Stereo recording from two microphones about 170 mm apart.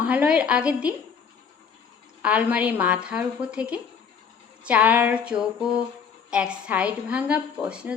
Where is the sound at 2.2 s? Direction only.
10° right (ahead or behind).